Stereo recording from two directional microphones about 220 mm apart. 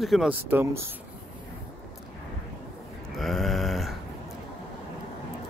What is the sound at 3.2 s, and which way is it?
Grunt, centre (ahead or behind).